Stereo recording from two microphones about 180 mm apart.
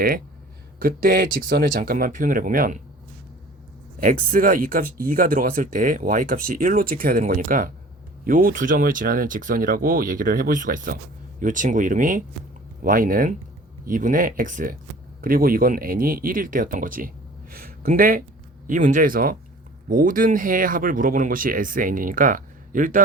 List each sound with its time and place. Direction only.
0.8 s speech: 55° right (ahead or behind)
4.0 s speech: 50° right (ahead or behind)